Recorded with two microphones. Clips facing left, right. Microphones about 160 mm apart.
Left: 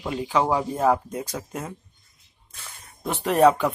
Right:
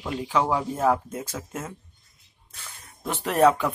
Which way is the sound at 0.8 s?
Centre (ahead or behind).